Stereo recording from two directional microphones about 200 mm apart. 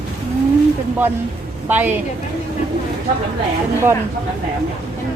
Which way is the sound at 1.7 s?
10° right (ahead or behind).